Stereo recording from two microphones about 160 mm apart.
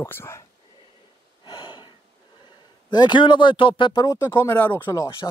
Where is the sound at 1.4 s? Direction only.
30° left (ahead or behind).